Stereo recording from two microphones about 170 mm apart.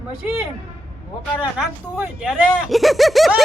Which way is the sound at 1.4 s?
10° right (ahead or behind).